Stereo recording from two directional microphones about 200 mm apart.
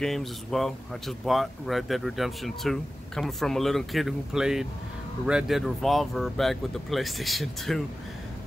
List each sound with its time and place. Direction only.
0.0 s speech: centre (ahead or behind)